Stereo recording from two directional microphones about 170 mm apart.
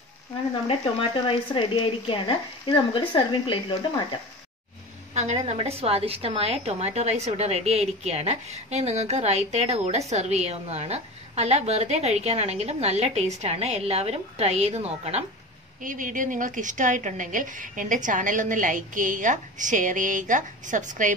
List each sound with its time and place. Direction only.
1.2 s speech: 30° left (ahead or behind)
5.1 s a woman's voice: 40° right (ahead or behind)
15.8 s a woman's voice: 50° right (ahead or behind)